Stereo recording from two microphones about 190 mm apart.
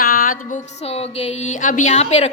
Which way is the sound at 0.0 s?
50° left (ahead or behind).